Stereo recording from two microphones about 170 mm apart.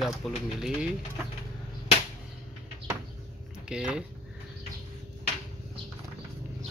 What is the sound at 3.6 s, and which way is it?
Speech, 5° right (ahead or behind).